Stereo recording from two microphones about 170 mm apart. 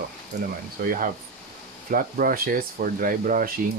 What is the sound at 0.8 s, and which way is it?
Speech, 55° right (ahead or behind).